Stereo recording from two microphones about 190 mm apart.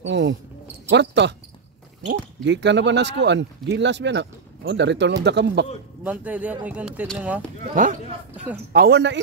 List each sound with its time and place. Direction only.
0.0 s a sound: 70° right (ahead or behind)
0.8 s cricket: 65° right (ahead or behind)
2.0 s speech: 65° right (ahead or behind)
6.0 s speech: 5° right (ahead or behind)
7.7 s a man's voice: 45° right (ahead or behind)
8.7 s speech: 60° right (ahead or behind)